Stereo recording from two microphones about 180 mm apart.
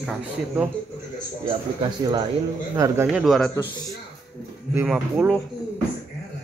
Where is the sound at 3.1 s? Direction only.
Centre (ahead or behind).